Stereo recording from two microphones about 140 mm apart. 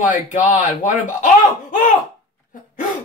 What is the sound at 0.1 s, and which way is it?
Speech, 65° left (ahead or behind).